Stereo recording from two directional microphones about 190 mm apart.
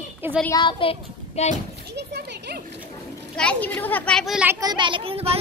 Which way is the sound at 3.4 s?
5° left (ahead or behind).